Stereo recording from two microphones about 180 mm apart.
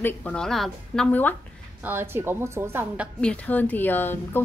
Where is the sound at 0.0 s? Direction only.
5° left (ahead or behind).